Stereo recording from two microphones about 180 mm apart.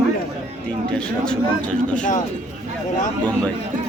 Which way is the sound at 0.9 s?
5° left (ahead or behind).